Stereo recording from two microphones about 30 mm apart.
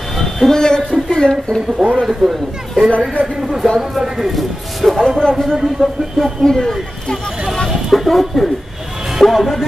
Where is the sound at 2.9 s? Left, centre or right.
Left.